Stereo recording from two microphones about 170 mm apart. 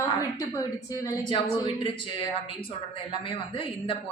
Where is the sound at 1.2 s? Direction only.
30° left (ahead or behind).